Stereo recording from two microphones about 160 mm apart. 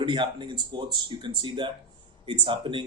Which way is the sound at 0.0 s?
30° right (ahead or behind).